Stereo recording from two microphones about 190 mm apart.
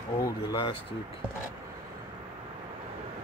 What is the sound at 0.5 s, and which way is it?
Speech, 25° left (ahead or behind).